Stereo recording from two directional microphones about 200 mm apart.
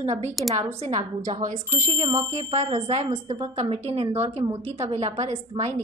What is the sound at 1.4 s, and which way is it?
A woman's voice, 35° right (ahead or behind).